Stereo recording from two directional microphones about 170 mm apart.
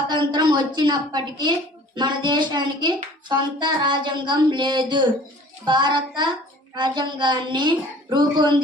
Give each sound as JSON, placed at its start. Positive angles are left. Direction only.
{"t": 0.1, "sound": "speech", "side_deg": -25}